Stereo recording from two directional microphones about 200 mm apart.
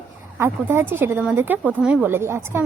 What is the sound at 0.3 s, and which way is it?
Speech, 10° right (ahead or behind).